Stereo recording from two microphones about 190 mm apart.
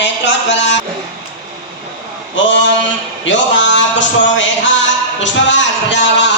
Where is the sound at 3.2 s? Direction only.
75° left (ahead or behind).